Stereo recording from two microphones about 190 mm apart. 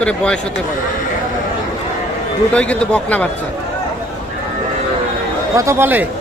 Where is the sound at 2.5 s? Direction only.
5° left (ahead or behind).